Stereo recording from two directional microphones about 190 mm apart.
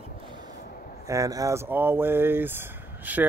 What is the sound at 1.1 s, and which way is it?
Speech, 20° right (ahead or behind).